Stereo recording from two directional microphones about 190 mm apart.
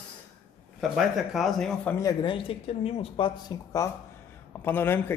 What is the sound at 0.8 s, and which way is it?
Speech, centre (ahead or behind).